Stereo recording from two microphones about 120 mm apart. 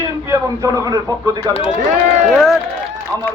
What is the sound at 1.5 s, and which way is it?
Speech, 55° left (ahead or behind).